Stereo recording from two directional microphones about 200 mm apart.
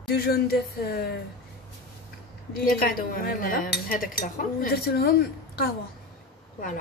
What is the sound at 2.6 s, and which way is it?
Speech, 45° left (ahead or behind).